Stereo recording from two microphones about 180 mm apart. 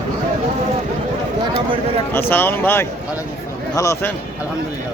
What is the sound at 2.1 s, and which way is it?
Speech, 10° left (ahead or behind).